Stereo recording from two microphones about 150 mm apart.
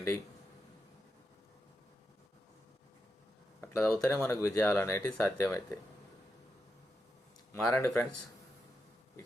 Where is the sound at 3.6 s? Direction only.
15° left (ahead or behind).